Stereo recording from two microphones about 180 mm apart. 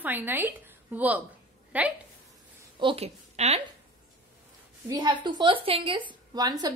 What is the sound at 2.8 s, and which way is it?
Speech, 35° right (ahead or behind).